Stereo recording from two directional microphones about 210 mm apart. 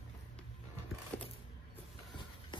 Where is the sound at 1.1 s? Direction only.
5° left (ahead or behind).